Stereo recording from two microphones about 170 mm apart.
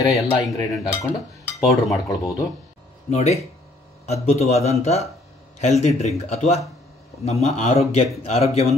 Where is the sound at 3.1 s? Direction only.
40° left (ahead or behind).